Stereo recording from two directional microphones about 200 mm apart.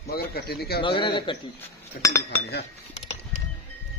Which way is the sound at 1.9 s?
50° left (ahead or behind).